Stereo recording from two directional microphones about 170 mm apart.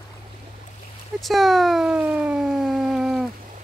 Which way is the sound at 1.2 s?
Centre (ahead or behind).